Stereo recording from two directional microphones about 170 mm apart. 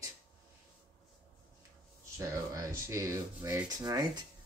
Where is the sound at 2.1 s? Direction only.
20° right (ahead or behind).